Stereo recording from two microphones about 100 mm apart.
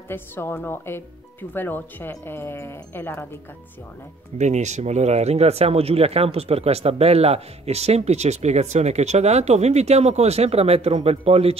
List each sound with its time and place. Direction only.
0.1 s speech: 20° left (ahead or behind)
4.3 s speech: 90° right